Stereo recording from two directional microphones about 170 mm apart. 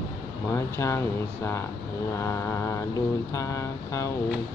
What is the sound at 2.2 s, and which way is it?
Mantra, 15° left (ahead or behind).